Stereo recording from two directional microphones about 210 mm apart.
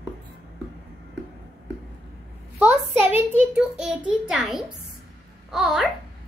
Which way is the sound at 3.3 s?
5° right (ahead or behind).